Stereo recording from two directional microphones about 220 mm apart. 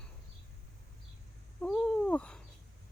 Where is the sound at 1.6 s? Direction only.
5° left (ahead or behind).